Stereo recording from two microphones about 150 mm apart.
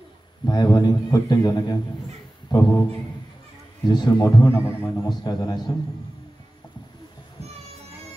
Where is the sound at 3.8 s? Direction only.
30° left (ahead or behind).